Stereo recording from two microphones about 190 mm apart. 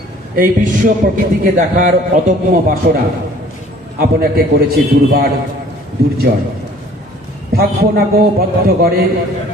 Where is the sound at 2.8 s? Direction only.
60° right (ahead or behind).